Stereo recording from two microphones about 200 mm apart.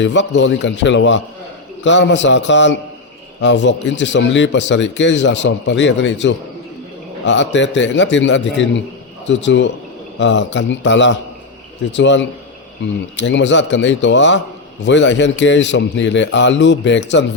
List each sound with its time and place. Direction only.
0.0 s speech: 65° left (ahead or behind)